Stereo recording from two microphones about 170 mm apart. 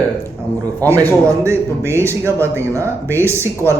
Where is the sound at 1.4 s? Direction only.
15° right (ahead or behind).